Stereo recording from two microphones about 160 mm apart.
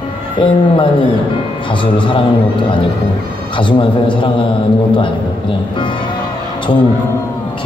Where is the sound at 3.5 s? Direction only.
30° left (ahead or behind).